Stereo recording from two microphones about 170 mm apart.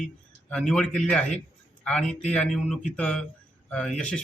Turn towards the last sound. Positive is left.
turn(degrees=5)  # may be behind; listen again after turning